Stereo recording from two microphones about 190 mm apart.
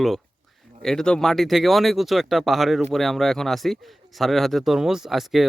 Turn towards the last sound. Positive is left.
turn(degrees=0)  # may be behind; listen again after turning